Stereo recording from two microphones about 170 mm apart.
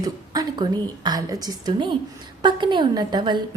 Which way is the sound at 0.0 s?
25° right (ahead or behind).